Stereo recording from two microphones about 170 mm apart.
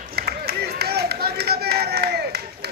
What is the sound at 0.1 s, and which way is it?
Run, 70° right (ahead or behind).